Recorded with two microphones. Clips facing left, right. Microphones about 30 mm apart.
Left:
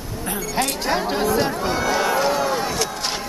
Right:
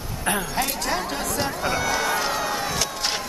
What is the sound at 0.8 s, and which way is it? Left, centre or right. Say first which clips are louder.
Chatter: left 5 dB; left.